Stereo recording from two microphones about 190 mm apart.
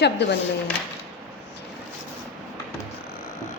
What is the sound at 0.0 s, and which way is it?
Speech, 60° left (ahead or behind).